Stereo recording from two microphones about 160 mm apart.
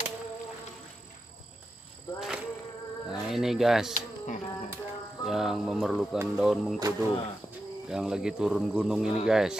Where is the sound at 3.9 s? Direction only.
50° left (ahead or behind).